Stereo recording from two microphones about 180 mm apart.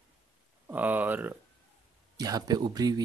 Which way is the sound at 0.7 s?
10° right (ahead or behind).